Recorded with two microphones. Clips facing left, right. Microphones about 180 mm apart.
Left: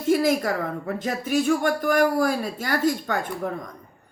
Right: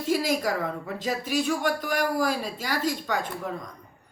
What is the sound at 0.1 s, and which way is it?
A woman's voice, 50° left (ahead or behind).